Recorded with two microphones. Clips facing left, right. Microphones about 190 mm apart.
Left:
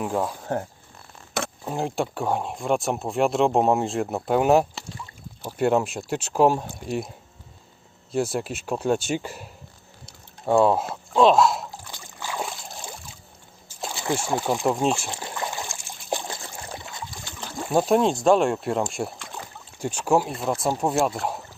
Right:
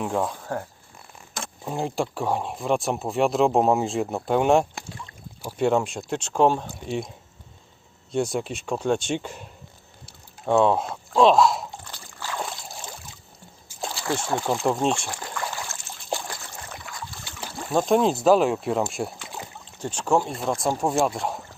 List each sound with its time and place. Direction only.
0.0 s speech: centre (ahead or behind)
1.6 s speech: centre (ahead or behind)
8.1 s speech: 5° left (ahead or behind)
12.0 s a sound: 15° left (ahead or behind)
13.9 s speech: 15° left (ahead or behind)
15.1 s trickle: 25° left (ahead or behind)
17.2 s trickle: 5° right (ahead or behind)
17.6 s speech: 10° left (ahead or behind)
19.8 s speech: 10° left (ahead or behind)